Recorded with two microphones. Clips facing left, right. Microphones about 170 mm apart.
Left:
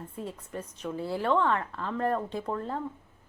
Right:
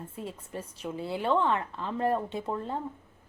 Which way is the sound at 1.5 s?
20° right (ahead or behind).